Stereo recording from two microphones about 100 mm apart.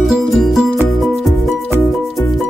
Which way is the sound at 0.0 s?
5° right (ahead or behind).